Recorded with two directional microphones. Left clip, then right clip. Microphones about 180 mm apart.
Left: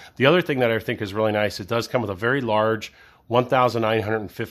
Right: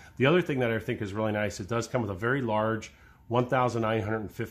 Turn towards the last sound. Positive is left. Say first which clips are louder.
# left 7 dB
turn(degrees=35)  # may be behind; listen again after turning